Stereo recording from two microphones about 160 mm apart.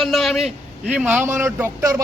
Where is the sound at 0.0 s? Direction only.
Centre (ahead or behind).